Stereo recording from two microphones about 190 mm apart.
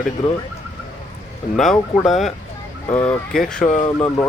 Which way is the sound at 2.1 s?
Centre (ahead or behind).